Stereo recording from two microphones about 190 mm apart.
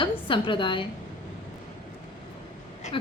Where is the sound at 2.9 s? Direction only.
25° left (ahead or behind).